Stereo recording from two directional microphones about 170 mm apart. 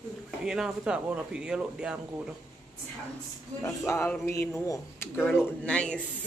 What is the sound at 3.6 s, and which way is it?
A man's voice, 15° left (ahead or behind).